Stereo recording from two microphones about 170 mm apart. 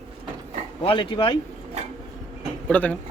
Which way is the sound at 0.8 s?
30° left (ahead or behind).